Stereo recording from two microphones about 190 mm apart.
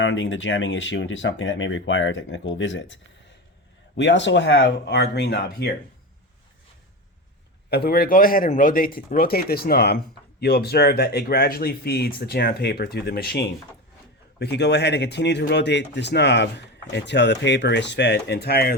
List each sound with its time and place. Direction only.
0.0 s speech: 75° left (ahead or behind); by 5.7 s 60° left (ahead or behind)
7.7 s a man's voice: 55° left (ahead or behind)